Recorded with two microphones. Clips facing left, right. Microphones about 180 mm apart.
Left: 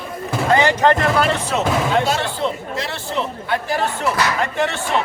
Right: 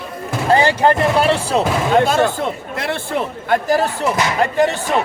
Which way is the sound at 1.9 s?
50° right (ahead or behind).